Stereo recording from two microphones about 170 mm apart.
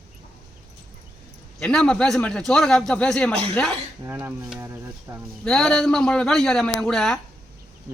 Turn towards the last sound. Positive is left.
turn(degrees=5)  # may be behind; listen again after turning